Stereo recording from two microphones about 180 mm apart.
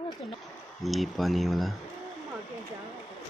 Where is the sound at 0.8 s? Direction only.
Centre (ahead or behind).